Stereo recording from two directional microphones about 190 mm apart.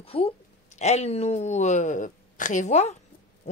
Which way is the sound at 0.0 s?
30° left (ahead or behind).